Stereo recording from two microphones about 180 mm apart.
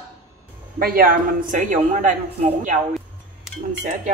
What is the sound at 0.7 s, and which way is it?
A woman's voice, 55° right (ahead or behind).